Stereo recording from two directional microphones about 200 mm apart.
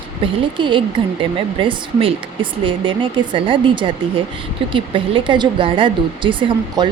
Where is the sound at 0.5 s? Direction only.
25° right (ahead or behind).